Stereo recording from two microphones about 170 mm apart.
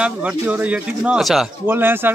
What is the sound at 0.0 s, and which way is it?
A man's voice, 10° right (ahead or behind).